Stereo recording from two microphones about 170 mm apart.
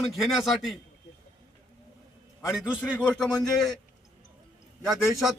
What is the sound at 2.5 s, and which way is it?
Speech, 5° right (ahead or behind).